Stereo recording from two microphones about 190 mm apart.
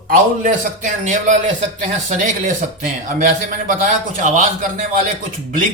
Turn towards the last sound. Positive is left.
turn(degrees=-45)  # may be behind; listen again after turning